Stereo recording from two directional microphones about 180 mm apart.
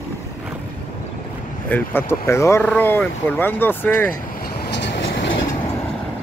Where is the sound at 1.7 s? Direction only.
10° left (ahead or behind).